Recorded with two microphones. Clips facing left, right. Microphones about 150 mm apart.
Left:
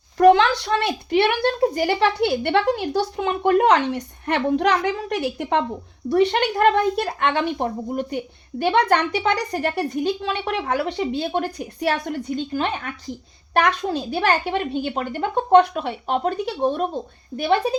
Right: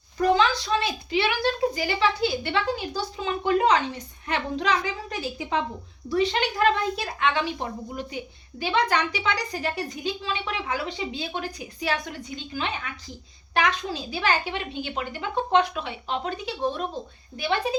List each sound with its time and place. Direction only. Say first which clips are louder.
0.2 s a woman's voice: left 7 dB; 70° left (ahead or behind); by 17.6 s 50° left (ahead or behind)